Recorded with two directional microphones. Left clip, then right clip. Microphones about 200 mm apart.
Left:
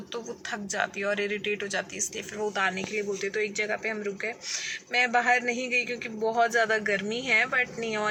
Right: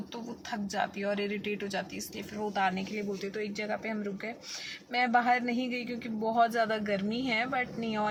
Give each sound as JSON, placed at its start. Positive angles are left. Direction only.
{"t": 0.5, "sound": "a man's voice", "side_deg": -5}